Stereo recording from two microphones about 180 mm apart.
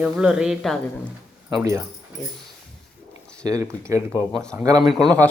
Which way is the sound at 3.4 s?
15° right (ahead or behind).